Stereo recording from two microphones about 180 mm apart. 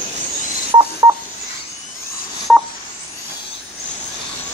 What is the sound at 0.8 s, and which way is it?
Telephone dialing, 20° right (ahead or behind).